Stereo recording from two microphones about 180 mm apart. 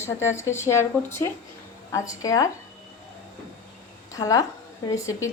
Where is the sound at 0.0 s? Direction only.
15° left (ahead or behind).